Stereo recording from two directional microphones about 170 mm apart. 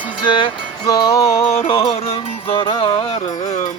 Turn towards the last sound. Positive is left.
turn(degrees=40)  # may be behind; listen again after turning